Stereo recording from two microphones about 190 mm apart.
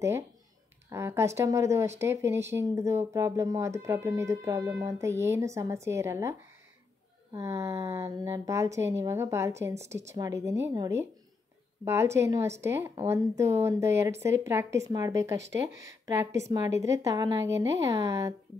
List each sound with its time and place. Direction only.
0.8 s speech: 15° right (ahead or behind)
7.3 s speech: 15° right (ahead or behind)